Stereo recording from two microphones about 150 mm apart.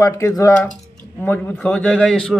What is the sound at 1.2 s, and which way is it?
A man's voice, 10° left (ahead or behind).